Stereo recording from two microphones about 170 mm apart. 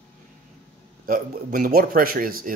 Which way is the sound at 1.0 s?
55° right (ahead or behind).